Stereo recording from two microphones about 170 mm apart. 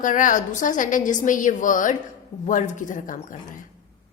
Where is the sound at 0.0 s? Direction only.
50° left (ahead or behind).